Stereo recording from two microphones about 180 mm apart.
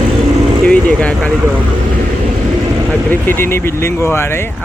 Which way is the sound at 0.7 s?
5° left (ahead or behind).